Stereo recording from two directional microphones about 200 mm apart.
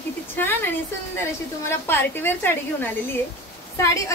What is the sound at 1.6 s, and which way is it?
A woman's voice, 10° left (ahead or behind).